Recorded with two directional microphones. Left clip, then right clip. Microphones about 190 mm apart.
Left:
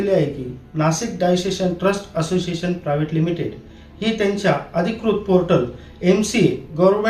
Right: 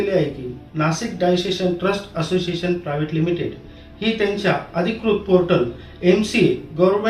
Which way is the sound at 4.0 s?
15° left (ahead or behind).